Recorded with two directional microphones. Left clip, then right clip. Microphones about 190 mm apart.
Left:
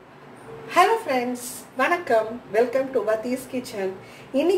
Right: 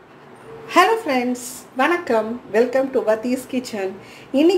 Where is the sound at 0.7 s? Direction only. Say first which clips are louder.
Right 3 dB; 45° right (ahead or behind).